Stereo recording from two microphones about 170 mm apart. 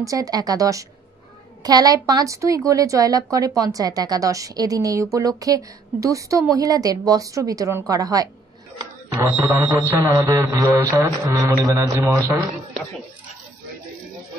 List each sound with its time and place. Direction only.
0.0 s a woman's voice: 20° right (ahead or behind)
10.2 s a sound: 20° right (ahead or behind)
11.0 s a woman's voice: 20° right (ahead or behind)